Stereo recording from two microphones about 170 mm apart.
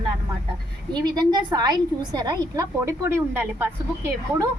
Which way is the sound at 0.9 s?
25° right (ahead or behind).